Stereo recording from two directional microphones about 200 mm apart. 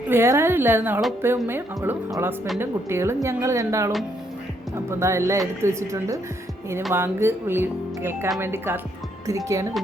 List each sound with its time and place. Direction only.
0.1 s a woman's voice: 10° right (ahead or behind)